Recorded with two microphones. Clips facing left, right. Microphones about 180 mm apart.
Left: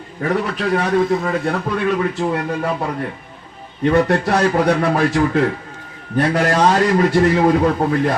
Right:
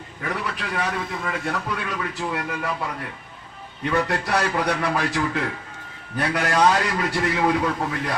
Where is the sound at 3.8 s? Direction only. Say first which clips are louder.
Left 9 dB; 35° left (ahead or behind).